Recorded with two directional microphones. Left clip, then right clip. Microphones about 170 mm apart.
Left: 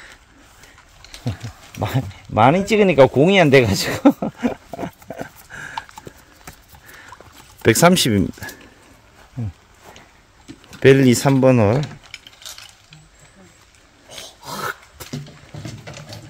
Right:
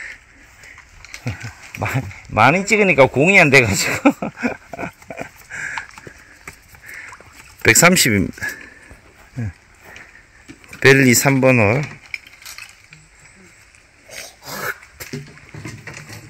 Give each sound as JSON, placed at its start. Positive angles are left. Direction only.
{"t": 1.8, "sound": "speech", "side_deg": 25}
{"t": 4.7, "sound": "dog", "side_deg": 20}
{"t": 7.6, "sound": "speech", "side_deg": 10}
{"t": 10.8, "sound": "speech", "side_deg": 10}
{"t": 12.1, "sound": "stir", "side_deg": 85}
{"t": 14.1, "sound": "dog", "side_deg": 65}